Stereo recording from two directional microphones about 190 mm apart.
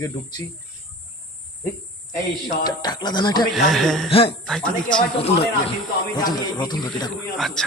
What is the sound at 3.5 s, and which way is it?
Speech, centre (ahead or behind).